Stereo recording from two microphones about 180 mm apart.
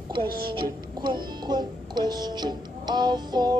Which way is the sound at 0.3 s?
55° right (ahead or behind).